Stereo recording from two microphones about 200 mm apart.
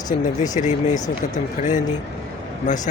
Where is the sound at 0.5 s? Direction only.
35° left (ahead or behind).